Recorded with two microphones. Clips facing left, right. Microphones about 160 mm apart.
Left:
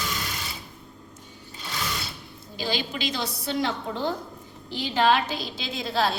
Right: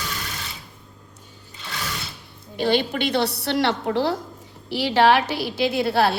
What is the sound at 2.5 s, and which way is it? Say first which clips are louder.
A woman's voice: right 8 dB; 60° right (ahead or behind).